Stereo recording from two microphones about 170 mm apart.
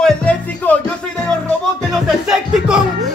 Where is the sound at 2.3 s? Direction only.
5° right (ahead or behind).